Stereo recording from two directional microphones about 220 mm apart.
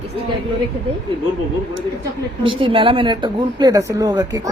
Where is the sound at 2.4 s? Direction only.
25° right (ahead or behind).